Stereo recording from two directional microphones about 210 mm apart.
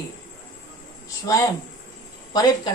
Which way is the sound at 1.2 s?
15° left (ahead or behind).